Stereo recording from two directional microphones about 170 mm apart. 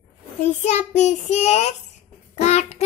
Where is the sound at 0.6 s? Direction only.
40° left (ahead or behind).